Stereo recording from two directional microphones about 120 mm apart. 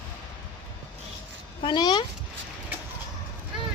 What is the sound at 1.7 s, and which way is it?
Speech, 40° left (ahead or behind).